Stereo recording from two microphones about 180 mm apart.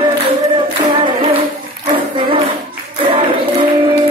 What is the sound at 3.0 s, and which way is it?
Music, 30° right (ahead or behind).